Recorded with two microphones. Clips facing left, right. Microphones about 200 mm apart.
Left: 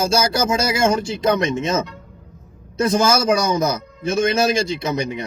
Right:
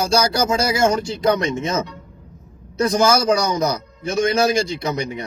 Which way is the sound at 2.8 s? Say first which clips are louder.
Even; 20° left (ahead or behind).